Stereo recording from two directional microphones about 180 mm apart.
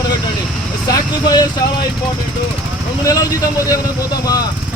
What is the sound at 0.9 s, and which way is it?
Vehicle, 20° left (ahead or behind).